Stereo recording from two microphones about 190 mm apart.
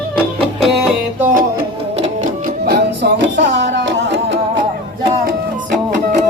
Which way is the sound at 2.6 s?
60° right (ahead or behind).